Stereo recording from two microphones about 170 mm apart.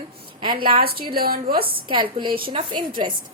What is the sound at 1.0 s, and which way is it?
Speech, 60° right (ahead or behind).